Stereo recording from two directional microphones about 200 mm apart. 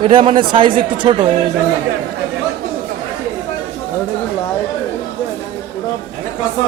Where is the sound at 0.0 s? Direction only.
25° right (ahead or behind).